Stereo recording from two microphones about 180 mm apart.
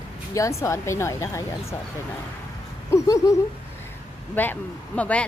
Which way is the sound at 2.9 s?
20° left (ahead or behind).